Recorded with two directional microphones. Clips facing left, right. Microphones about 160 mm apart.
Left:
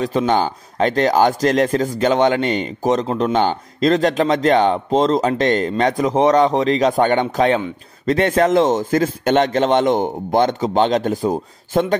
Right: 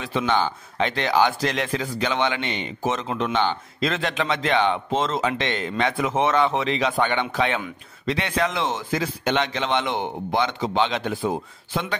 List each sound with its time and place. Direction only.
0.0 s a man's voice: 40° left (ahead or behind)